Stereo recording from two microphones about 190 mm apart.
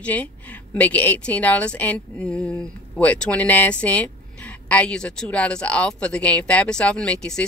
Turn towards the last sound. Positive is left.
turn(degrees=5)  # may be behind; listen again after turning